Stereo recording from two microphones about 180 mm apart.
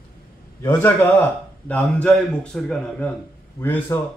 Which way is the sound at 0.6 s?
15° left (ahead or behind).